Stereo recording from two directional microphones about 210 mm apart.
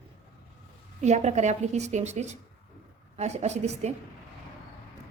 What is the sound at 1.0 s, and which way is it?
A woman's voice, 35° right (ahead or behind).